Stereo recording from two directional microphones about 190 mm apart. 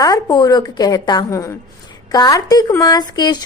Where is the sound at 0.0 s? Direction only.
20° left (ahead or behind).